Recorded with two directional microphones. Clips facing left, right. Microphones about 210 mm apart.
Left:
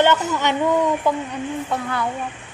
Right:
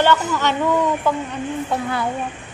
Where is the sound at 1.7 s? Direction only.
10° right (ahead or behind).